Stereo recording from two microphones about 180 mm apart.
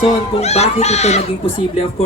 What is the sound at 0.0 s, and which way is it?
Speech, 35° left (ahead or behind).